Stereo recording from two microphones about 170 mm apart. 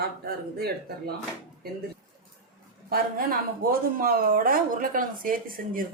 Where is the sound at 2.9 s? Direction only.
60° right (ahead or behind).